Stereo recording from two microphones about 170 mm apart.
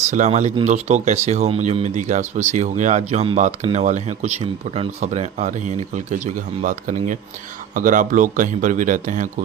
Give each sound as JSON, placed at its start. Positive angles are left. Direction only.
{"t": 0.0, "sound": "speech", "side_deg": -45}